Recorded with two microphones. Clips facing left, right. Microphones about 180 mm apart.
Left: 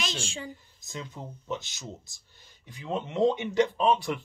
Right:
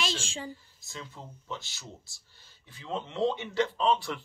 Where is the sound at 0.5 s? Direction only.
20° left (ahead or behind).